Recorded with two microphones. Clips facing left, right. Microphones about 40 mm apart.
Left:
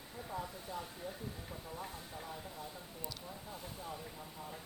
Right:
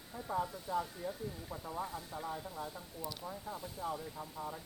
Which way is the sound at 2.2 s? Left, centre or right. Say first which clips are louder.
Right 5 dB; right.